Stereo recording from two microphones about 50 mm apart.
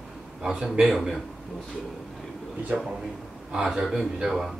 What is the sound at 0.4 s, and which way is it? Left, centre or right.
Speech, centre.